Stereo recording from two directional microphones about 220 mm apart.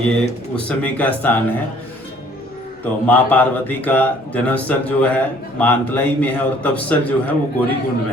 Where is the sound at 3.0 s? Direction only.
5° left (ahead or behind).